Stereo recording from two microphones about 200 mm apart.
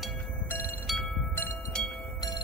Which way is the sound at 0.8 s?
Centre (ahead or behind).